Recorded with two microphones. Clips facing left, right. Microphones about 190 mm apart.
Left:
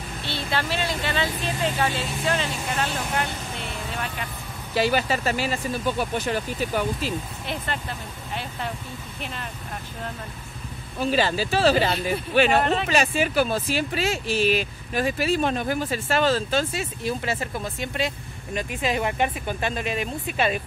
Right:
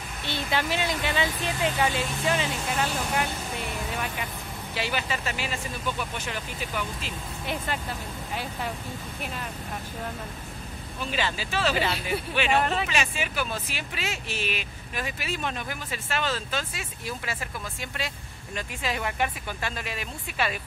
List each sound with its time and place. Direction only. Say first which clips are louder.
0.3 s speech: even; 15° right (ahead or behind)
4.7 s speech: left 8 dB; 40° left (ahead or behind)
7.4 s speech: right 2 dB; 10° right (ahead or behind)
11.0 s speech: left 8 dB; 35° left (ahead or behind)